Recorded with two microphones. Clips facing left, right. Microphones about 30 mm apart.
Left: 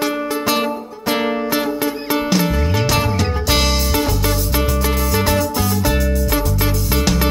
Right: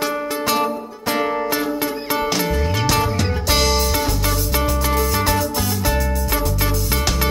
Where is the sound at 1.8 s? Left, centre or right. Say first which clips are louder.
Left 2 dB; centre.